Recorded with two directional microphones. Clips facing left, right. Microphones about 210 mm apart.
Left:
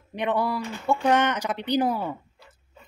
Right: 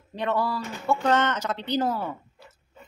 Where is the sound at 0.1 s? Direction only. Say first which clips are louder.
Left 1 dB; 15° left (ahead or behind).